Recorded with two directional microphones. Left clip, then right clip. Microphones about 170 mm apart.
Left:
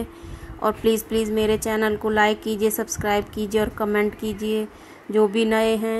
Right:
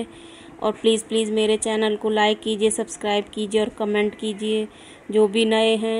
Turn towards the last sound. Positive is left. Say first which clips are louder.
# right 1 dB
turn(degrees=0)  # may be behind; listen again after turning